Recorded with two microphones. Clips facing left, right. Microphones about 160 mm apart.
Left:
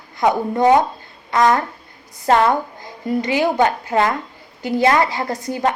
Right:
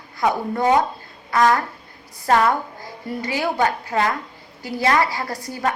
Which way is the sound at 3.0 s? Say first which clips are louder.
Left 6 dB; 20° left (ahead or behind).